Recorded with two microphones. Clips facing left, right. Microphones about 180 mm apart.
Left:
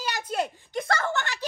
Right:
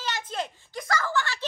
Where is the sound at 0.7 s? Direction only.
25° left (ahead or behind).